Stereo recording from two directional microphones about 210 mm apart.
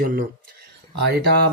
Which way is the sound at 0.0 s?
45° right (ahead or behind).